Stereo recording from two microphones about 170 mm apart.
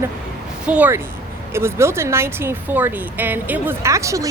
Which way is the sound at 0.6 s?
10° right (ahead or behind).